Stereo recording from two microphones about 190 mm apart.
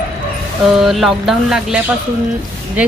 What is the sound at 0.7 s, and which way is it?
Speech, centre (ahead or behind).